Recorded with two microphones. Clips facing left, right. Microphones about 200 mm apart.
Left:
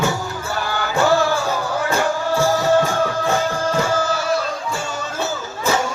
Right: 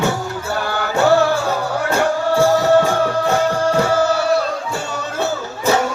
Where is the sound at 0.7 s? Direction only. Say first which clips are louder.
Right 3 dB; 60° right (ahead or behind).